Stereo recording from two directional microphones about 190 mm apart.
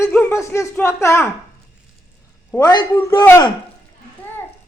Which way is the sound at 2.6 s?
20° left (ahead or behind).